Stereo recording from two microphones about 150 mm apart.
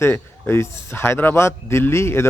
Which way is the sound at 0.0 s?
15° left (ahead or behind).